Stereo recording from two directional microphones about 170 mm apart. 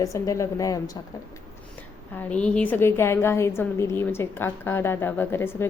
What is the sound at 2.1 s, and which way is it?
A woman's voice, 5° left (ahead or behind).